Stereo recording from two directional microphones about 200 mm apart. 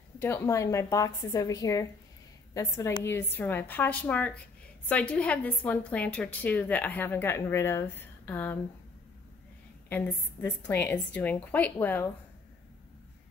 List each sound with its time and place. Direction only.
0.2 s a woman's voice: 10° left (ahead or behind)
9.8 s a woman's voice: 10° left (ahead or behind)